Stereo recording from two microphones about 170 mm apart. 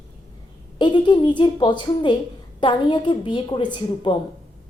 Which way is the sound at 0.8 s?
30° left (ahead or behind).